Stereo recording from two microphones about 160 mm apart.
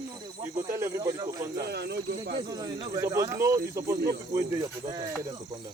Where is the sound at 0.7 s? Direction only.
20° right (ahead or behind).